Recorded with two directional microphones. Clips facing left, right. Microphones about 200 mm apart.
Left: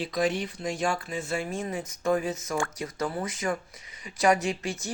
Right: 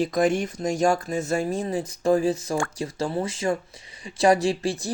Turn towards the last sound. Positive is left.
turn(degrees=-30)  # may be behind; listen again after turning